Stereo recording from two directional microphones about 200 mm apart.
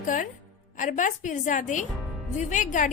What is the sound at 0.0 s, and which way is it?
A woman's voice, 40° left (ahead or behind).